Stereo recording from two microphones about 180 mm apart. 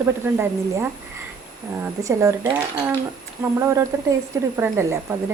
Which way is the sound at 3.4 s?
15° right (ahead or behind).